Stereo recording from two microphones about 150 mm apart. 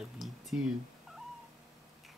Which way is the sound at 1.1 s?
Centre (ahead or behind).